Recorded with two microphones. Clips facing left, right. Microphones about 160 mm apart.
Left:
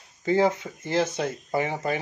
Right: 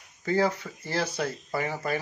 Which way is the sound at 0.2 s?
20° left (ahead or behind).